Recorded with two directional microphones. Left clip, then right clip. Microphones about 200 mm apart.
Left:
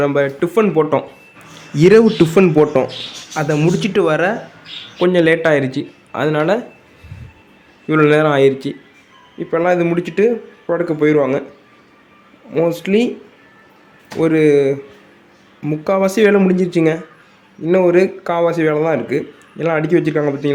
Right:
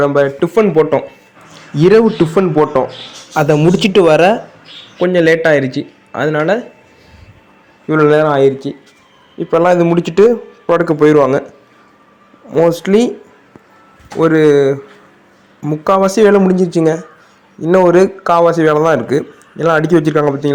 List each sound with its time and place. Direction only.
0.0 s speech: centre (ahead or behind)
1.7 s a man's voice: 10° left (ahead or behind)
3.3 s a man's voice: 15° right (ahead or behind)
4.9 s speech: centre (ahead or behind)
7.9 s speech: 5° left (ahead or behind)
9.4 s a man's voice: 10° right (ahead or behind)
12.5 s a man's voice: 10° right (ahead or behind)
14.2 s a man's voice: 5° right (ahead or behind)